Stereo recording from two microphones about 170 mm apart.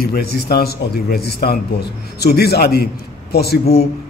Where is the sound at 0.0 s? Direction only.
65° left (ahead or behind).